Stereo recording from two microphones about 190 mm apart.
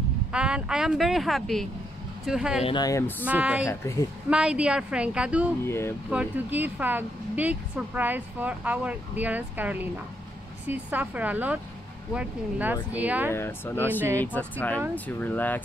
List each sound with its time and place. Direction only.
0.3 s speech: 5° right (ahead or behind)
2.6 s speech: 20° left (ahead or behind)
3.3 s speech: 5° right (ahead or behind)
3.6 s speech: 15° left (ahead or behind)
4.3 s speech: 5° right (ahead or behind)
5.7 s speech: 15° left (ahead or behind)
6.0 s speech: 5° right (ahead or behind)
13.3 s speech: 10° left (ahead or behind)